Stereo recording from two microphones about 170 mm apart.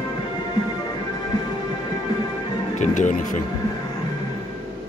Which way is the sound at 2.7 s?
45° left (ahead or behind).